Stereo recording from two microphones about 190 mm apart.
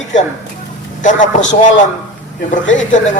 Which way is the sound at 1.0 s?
40° left (ahead or behind).